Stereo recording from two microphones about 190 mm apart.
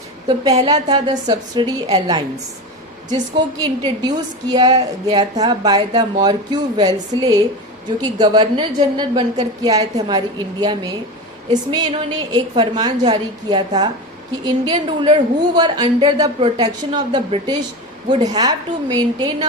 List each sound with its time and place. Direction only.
0.5 s a woman's voice: 25° right (ahead or behind)